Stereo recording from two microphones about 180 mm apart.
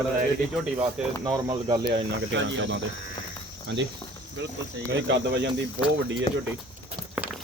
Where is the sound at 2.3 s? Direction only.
90° right.